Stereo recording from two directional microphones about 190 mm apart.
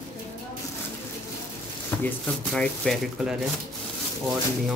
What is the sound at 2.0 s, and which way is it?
Speech, 5° left (ahead or behind).